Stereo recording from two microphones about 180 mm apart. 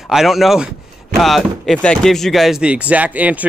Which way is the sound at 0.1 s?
Centre (ahead or behind).